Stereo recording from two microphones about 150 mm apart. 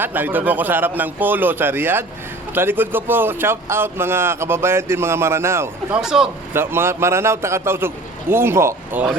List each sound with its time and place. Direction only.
0.0 s a man's voice: 10° right (ahead or behind)
5.9 s speech: 5° right (ahead or behind)
6.5 s a man's voice: 15° right (ahead or behind)